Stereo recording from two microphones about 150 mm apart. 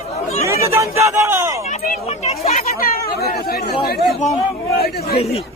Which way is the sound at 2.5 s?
70° left (ahead or behind).